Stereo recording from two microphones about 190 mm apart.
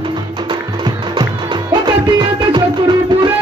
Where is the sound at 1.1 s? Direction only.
25° right (ahead or behind).